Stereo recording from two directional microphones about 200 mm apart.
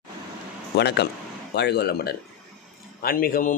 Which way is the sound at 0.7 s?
55° left (ahead or behind).